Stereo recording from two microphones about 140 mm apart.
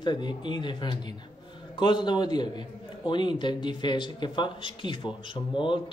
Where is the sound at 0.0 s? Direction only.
30° left (ahead or behind).